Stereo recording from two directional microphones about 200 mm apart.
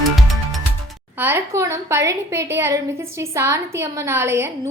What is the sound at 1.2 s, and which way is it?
A woman's voice, 10° right (ahead or behind).